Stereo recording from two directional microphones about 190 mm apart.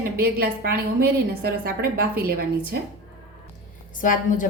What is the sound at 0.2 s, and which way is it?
A woman's voice, 55° right (ahead or behind).